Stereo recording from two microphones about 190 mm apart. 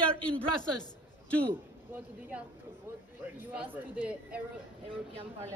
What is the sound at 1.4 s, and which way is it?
A man's voice, 10° right (ahead or behind).